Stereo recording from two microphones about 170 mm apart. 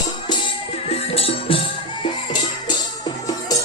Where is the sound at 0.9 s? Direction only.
35° left (ahead or behind).